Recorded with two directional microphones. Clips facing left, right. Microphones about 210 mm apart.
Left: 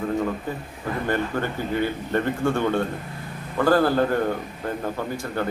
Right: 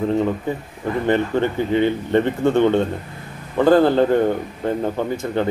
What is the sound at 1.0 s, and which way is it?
Speech, 20° right (ahead or behind).